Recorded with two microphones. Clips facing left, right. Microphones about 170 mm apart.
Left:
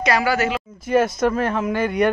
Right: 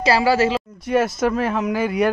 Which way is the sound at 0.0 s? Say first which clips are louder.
Right 3 dB; 30° right (ahead or behind).